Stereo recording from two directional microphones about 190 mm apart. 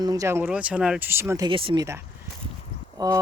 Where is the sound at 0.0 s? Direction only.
20° right (ahead or behind).